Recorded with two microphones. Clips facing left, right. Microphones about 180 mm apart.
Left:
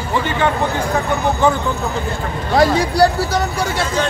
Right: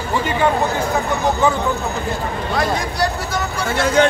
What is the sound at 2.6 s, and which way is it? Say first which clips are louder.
Speech: left 8 dB; 30° left (ahead or behind).